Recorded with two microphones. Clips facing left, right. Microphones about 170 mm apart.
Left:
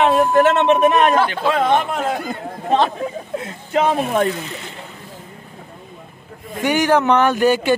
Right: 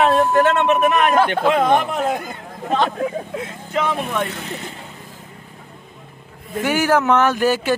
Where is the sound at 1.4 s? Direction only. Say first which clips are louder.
Right 1 dB; 10° right (ahead or behind).